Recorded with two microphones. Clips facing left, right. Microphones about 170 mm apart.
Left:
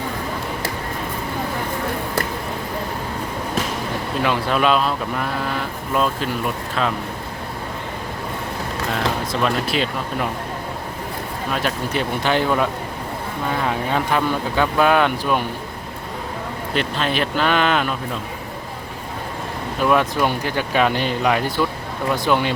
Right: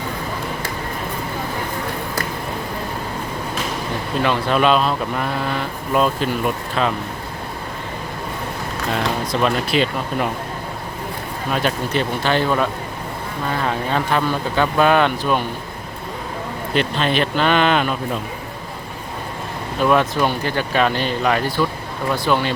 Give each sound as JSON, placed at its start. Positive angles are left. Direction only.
{"t": 4.2, "sound": "speech", "side_deg": 5}
{"t": 9.3, "sound": "speech", "side_deg": 0}
{"t": 11.5, "sound": "speech", "side_deg": 5}
{"t": 16.7, "sound": "speech", "side_deg": 5}
{"t": 19.9, "sound": "speech", "side_deg": 10}